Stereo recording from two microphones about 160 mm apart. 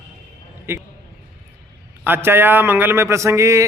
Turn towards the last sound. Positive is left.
turn(degrees=-20)  # may be behind; listen again after turning